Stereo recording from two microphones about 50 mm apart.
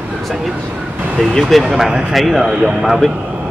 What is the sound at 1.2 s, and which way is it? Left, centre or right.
Speech, centre.